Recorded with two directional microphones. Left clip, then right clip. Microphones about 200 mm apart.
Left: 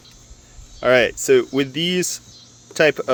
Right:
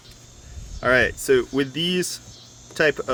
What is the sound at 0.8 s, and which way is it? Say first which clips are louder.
Speech: left 3 dB; 30° left (ahead or behind).